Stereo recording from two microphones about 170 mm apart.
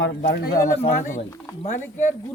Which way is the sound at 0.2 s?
70° left (ahead or behind).